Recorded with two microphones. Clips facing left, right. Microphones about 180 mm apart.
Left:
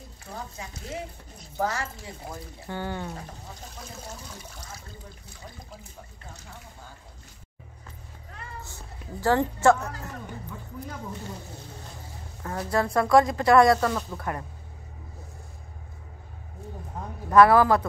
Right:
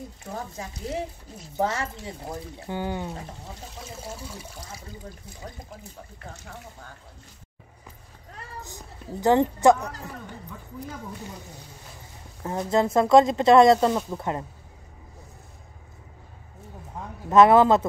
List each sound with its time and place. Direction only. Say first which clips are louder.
0.3 s speech: right 3 dB; 35° right (ahead or behind)
1.6 s speech: right 2 dB; 25° right (ahead or behind); by 4.8 s 10° right (ahead or behind)
8.5 s speech: right 2 dB; 15° right (ahead or behind)
12.4 s speech: right 4 dB; 20° right (ahead or behind)
17.3 s speech: right 2 dB; 20° right (ahead or behind)